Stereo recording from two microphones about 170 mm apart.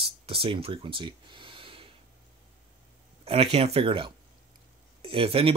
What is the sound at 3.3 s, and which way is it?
Speech, 35° right (ahead or behind).